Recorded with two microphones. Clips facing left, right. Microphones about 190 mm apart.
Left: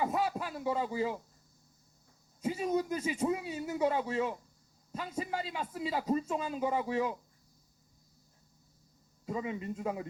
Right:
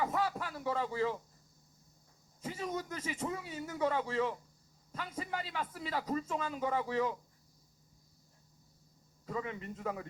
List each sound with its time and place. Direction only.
0.0 s a sound: 15° left (ahead or behind)
2.4 s a man's voice: 15° left (ahead or behind)
9.2 s a man's voice: 15° left (ahead or behind)